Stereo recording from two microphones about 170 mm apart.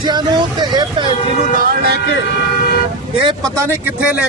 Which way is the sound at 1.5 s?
70° right (ahead or behind).